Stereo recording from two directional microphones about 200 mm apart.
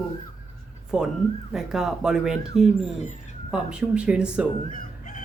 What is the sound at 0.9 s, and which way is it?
Speech, 5° right (ahead or behind).